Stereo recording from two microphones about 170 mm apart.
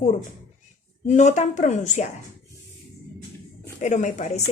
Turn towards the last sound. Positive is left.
turn(degrees=40)  # may be behind; listen again after turning